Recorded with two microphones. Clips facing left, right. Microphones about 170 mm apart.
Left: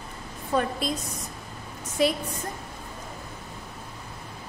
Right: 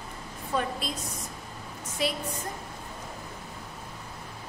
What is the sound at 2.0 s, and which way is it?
Speech, 45° left (ahead or behind).